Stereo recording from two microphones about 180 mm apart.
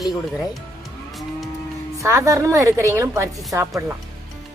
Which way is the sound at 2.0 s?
15° right (ahead or behind).